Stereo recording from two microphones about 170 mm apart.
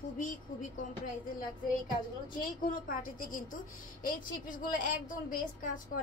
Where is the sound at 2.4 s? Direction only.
55° left (ahead or behind).